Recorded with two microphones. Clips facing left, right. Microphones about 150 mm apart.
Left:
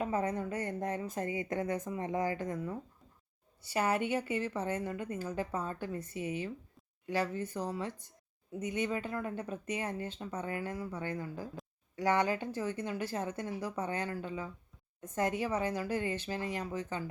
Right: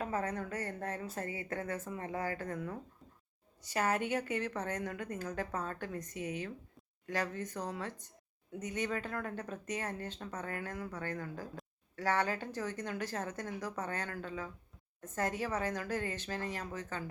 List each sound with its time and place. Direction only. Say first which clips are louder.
0.0 s speech: left 3 dB; 15° left (ahead or behind)
3.6 s speech: left 2 dB; 10° left (ahead or behind)